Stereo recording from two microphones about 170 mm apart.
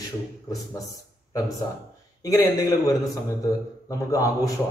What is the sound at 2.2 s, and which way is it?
A man's voice, 20° left (ahead or behind).